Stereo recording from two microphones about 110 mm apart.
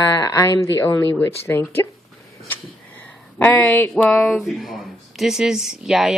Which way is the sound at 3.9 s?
5° left (ahead or behind).